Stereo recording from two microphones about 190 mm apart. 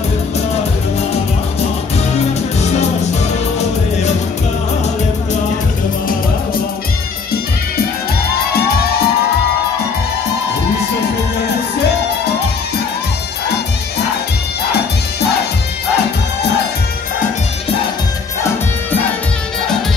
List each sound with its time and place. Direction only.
8.5 s music: 55° left (ahead or behind)